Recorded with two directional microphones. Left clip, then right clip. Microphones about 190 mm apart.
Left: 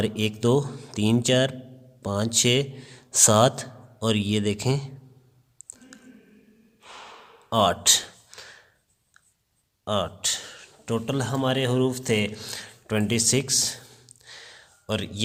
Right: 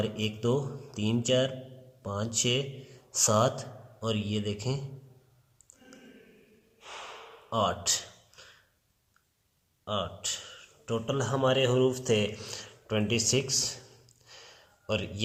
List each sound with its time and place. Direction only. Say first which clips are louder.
0.1 s speech: left 7 dB; 40° left (ahead or behind)
7.5 s a sound: left 8 dB; 45° left (ahead or behind)
9.8 s speech: left 7 dB; 45° left (ahead or behind)